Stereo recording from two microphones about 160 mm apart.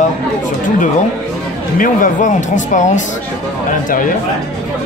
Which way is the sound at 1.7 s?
55° left (ahead or behind).